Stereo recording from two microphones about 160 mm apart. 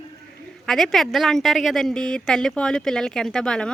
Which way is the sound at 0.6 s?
5° left (ahead or behind).